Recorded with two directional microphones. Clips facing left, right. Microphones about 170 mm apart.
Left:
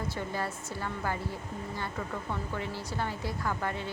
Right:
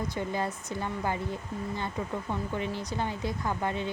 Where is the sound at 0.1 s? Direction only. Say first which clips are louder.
Right 3 dB; 20° right (ahead or behind).